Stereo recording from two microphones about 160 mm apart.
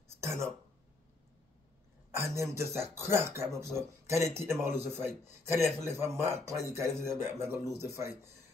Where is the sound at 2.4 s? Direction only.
15° right (ahead or behind).